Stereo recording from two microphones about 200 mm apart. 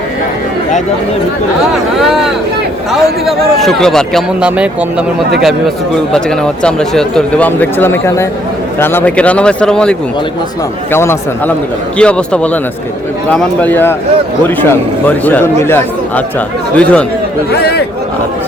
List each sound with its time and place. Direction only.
2.0 s a man's voice: centre (ahead or behind)
10.9 s a man's voice: 10° left (ahead or behind)
17.6 s a man's voice: 55° left (ahead or behind)